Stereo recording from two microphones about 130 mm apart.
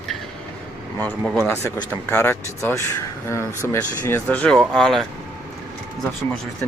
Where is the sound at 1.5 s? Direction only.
20° left (ahead or behind); by 5.0 s 5° left (ahead or behind).